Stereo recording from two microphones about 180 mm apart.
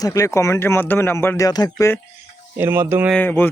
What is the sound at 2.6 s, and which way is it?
Speech, 15° right (ahead or behind).